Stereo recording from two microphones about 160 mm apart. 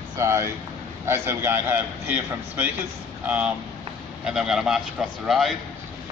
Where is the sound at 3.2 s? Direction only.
10° right (ahead or behind).